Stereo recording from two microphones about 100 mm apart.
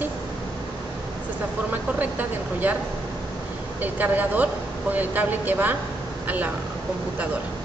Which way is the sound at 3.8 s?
15° right (ahead or behind).